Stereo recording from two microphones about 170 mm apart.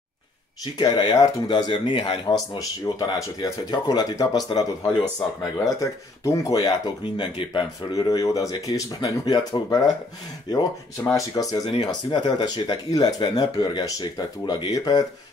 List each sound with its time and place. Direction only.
0.7 s speech: 25° left (ahead or behind)
11.1 s speech: 20° left (ahead or behind)